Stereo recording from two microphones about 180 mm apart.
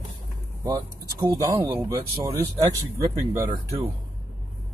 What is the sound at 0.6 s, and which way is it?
Speech, 20° right (ahead or behind).